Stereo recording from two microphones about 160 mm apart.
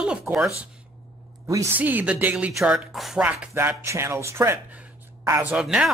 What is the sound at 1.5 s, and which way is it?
Speech, 15° right (ahead or behind).